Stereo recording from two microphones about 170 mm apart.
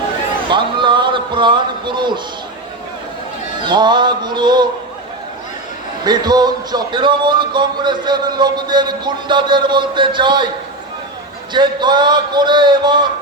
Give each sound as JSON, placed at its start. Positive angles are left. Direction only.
{"t": 0.5, "sound": "music", "side_deg": -30}
{"t": 3.6, "sound": "music", "side_deg": -25}
{"t": 6.1, "sound": "music", "side_deg": -25}
{"t": 11.5, "sound": "music", "side_deg": -25}